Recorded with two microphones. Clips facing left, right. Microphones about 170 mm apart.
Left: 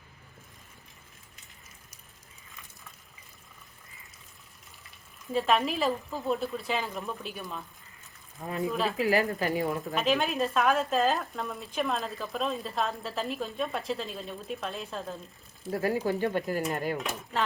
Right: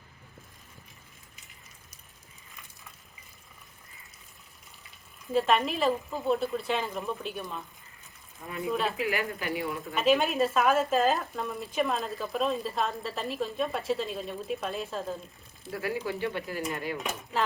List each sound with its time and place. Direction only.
5.3 s speech: centre (ahead or behind)
8.4 s speech: 45° left (ahead or behind)
9.9 s speech: centre (ahead or behind)
15.7 s speech: 40° left (ahead or behind)